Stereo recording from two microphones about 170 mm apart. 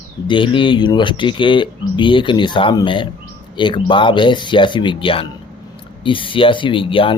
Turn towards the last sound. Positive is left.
turn(degrees=30)  # may be behind; listen again after turning